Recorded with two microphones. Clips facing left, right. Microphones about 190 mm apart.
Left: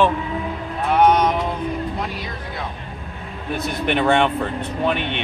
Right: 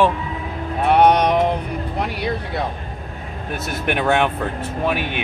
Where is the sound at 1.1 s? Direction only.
70° right (ahead or behind).